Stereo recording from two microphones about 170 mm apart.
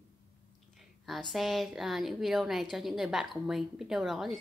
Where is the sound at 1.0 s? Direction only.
Centre (ahead or behind).